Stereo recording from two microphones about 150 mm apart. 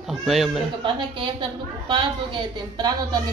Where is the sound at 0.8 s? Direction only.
30° right (ahead or behind).